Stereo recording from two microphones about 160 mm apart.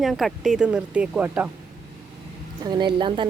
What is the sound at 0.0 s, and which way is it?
Speech, centre (ahead or behind).